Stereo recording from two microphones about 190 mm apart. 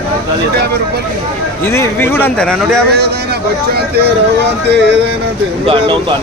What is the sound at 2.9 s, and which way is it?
Speech, 60° right (ahead or behind).